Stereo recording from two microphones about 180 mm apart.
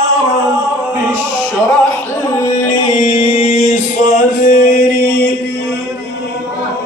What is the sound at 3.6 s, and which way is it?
Music, 45° left (ahead or behind).